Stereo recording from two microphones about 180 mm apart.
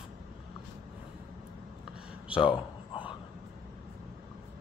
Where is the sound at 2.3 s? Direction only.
30° left (ahead or behind).